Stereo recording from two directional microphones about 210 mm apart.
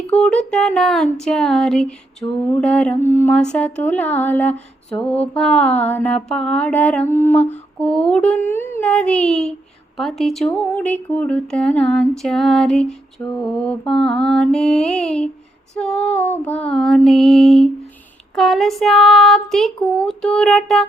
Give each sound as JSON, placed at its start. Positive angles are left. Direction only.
{"t": 0.2, "sound": "speech", "side_deg": 5}
{"t": 2.2, "sound": "speech", "side_deg": 15}
{"t": 2.6, "sound": "speech", "side_deg": 5}